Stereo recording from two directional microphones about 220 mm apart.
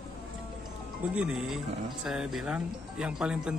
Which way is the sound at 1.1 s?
5° right (ahead or behind).